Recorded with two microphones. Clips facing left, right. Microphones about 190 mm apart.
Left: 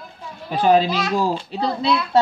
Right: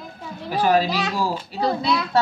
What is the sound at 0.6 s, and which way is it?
Speech, 25° left (ahead or behind).